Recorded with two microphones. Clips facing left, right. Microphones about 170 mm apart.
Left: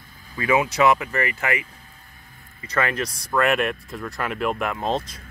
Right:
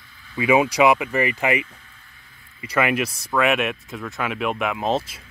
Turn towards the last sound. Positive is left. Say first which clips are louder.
# right 2 dB
turn(degrees=-5)  # may be behind; listen again after turning